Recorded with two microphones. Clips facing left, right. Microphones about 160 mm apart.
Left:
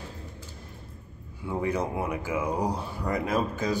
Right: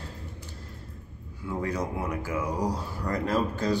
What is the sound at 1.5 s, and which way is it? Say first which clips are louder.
Speech: left 2 dB; 15° left (ahead or behind).